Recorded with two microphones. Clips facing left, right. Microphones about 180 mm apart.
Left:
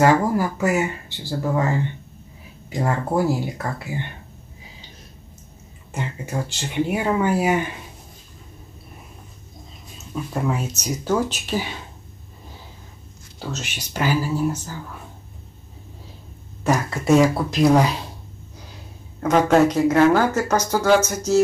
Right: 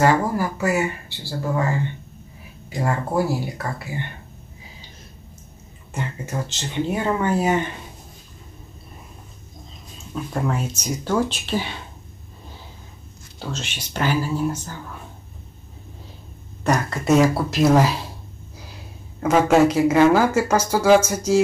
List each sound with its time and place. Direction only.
0.0 s speech: 15° left (ahead or behind)
2.8 s speech: 15° left (ahead or behind)
5.9 s speech: 15° left (ahead or behind)
10.1 s speech: 5° left (ahead or behind)
13.5 s speech: 10° left (ahead or behind)
16.6 s speech: centre (ahead or behind)
19.2 s speech: 10° right (ahead or behind)